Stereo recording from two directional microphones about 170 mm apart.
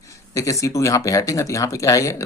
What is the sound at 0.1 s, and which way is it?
Speech, 20° left (ahead or behind).